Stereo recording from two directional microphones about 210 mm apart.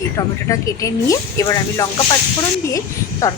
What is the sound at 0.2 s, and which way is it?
Speech, 15° left (ahead or behind).